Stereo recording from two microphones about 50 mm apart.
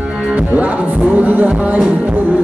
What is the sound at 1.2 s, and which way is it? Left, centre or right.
Music, right.